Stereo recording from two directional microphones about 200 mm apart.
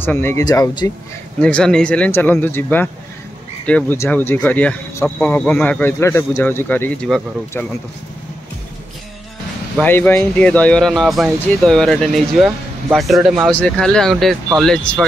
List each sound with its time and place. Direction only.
0.0 s speech: 10° left (ahead or behind)
1.4 s speech: 5° left (ahead or behind)
9.8 s speech: 10° left (ahead or behind)